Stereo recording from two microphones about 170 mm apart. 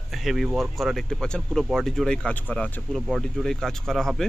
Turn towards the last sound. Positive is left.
turn(degrees=0)  # may be behind; listen again after turning